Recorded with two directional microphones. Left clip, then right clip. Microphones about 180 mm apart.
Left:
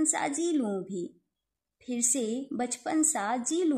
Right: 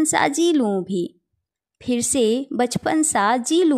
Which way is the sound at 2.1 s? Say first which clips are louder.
Right 12 dB; 30° right (ahead or behind).